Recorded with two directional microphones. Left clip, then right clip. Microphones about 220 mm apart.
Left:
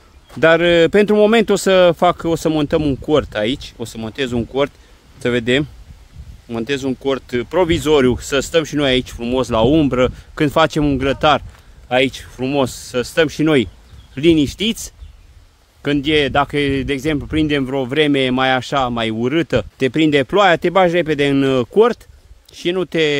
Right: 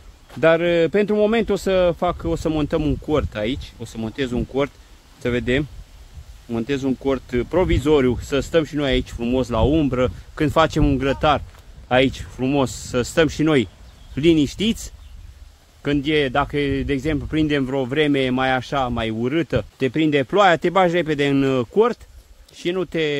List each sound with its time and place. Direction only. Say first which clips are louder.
0.3 s speech: left 4 dB; 30° left (ahead or behind)